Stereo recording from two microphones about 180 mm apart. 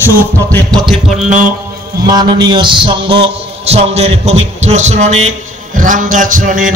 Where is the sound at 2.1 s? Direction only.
20° right (ahead or behind).